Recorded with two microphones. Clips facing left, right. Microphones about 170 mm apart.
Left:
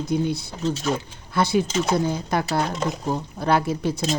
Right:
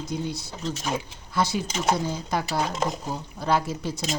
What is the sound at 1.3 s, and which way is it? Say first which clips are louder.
Speech: left 5 dB; 60° left (ahead or behind).